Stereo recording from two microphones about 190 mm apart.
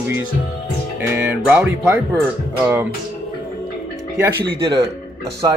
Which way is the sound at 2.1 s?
10° right (ahead or behind).